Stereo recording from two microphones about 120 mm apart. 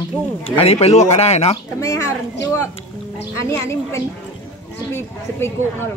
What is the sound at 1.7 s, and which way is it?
Speech, 30° left (ahead or behind).